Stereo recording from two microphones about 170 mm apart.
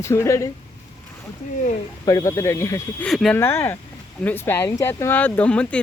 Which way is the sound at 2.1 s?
20° left (ahead or behind).